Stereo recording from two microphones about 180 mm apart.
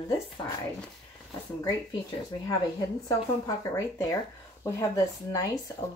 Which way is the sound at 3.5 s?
15° left (ahead or behind).